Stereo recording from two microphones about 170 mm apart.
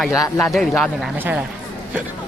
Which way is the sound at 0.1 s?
20° left (ahead or behind).